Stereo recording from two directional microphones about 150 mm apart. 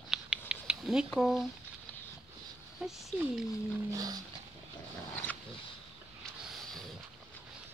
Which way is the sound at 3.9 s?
25° right (ahead or behind).